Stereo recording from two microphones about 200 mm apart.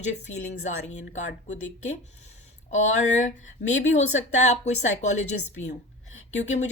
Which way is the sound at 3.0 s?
35° left (ahead or behind).